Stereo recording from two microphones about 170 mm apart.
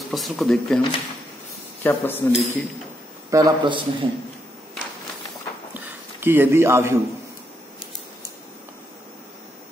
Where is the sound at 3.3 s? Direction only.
20° right (ahead or behind).